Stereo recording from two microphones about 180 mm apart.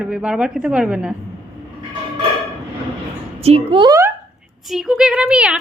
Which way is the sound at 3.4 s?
35° right (ahead or behind).